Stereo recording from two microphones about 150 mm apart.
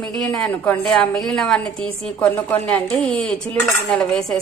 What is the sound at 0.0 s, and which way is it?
A woman's voice, 5° left (ahead or behind).